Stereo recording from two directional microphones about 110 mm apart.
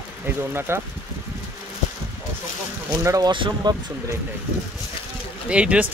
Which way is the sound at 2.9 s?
25° right (ahead or behind).